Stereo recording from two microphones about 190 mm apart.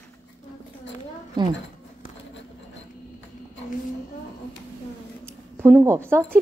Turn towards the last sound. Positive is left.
turn(degrees=-10)  # may be behind; listen again after turning